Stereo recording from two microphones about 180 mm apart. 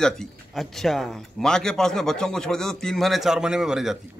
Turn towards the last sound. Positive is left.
turn(degrees=-5)  # may be behind; listen again after turning